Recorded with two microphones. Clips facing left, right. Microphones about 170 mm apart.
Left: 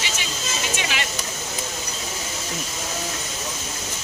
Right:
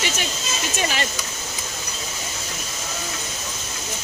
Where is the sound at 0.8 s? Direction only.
40° right (ahead or behind).